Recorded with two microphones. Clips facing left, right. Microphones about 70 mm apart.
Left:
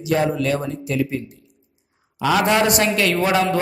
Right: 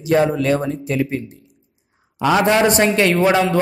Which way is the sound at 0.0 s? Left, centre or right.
Right.